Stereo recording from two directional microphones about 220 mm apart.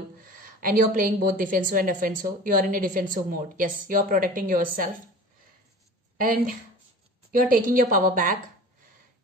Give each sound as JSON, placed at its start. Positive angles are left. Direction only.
{"t": 0.2, "sound": "a woman's voice", "side_deg": -40}
{"t": 6.1, "sound": "a woman's voice", "side_deg": -40}